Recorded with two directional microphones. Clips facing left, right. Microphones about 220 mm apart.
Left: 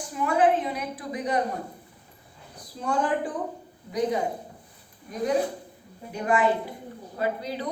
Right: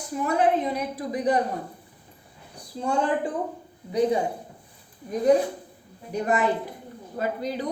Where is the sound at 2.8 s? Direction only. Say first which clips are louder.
Right 3 dB; 30° right (ahead or behind).